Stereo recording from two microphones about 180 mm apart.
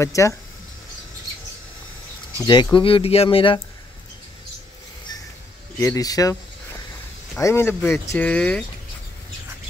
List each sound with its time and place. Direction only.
0.0 s speech: 15° left (ahead or behind)
2.3 s speech: 25° left (ahead or behind)
5.8 s speech: 20° left (ahead or behind)